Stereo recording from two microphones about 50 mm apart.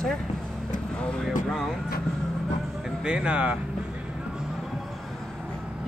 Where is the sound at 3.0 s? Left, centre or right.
Right.